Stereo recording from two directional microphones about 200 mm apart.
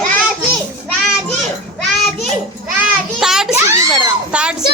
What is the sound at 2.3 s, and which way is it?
Children playing, centre (ahead or behind).